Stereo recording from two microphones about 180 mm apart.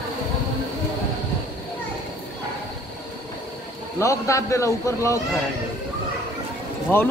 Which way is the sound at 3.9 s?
15° left (ahead or behind).